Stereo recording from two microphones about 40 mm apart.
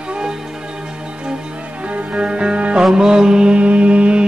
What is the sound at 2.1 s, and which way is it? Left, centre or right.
Music, right.